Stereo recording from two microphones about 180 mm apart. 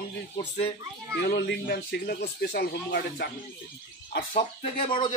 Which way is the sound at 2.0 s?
60° left (ahead or behind).